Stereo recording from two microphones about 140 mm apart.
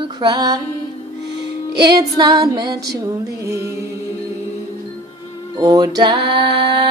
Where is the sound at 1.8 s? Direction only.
30° right (ahead or behind).